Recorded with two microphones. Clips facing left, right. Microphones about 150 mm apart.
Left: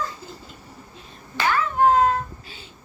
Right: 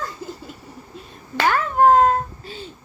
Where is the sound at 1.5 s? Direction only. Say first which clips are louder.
Right 3 dB; 40° right (ahead or behind).